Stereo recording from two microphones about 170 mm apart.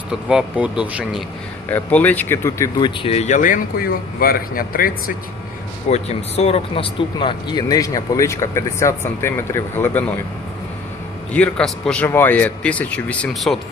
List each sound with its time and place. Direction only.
0.3 s speech: 5° right (ahead or behind)
1.7 s a man's voice: 10° left (ahead or behind)
2.8 s speech: 35° left (ahead or behind); by 5.1 s 60° left (ahead or behind)
5.9 s speech: 40° left (ahead or behind); by 10.0 s 10° left (ahead or behind)
11.3 s a man's voice: 5° left (ahead or behind)